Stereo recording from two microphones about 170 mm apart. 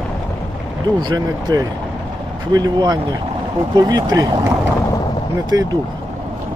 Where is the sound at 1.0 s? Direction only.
25° right (ahead or behind).